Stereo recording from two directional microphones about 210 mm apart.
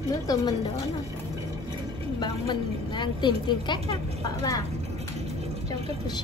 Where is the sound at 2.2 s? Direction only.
20° left (ahead or behind).